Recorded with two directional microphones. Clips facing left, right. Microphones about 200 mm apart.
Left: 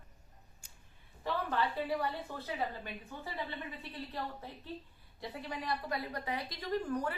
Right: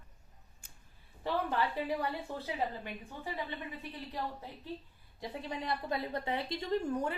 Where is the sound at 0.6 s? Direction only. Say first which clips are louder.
Right 1 dB; 55° right (ahead or behind).